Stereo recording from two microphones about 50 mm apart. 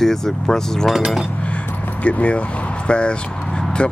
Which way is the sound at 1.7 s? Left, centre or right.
Left.